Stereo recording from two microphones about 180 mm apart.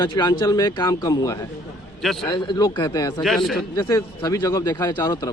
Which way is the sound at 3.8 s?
15° left (ahead or behind).